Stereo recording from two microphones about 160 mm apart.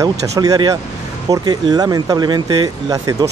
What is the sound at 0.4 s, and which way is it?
Speech, 25° right (ahead or behind).